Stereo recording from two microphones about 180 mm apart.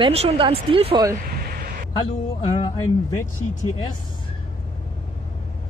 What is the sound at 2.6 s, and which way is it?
Music, 20° left (ahead or behind).